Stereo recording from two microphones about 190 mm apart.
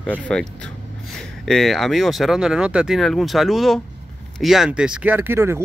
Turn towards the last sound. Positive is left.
turn(degrees=-10)  # may be behind; listen again after turning